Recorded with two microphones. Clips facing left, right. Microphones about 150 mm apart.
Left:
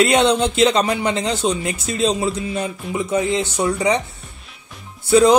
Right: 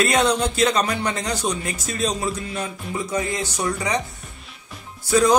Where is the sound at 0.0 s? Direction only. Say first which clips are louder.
Left 4 dB; 25° left (ahead or behind).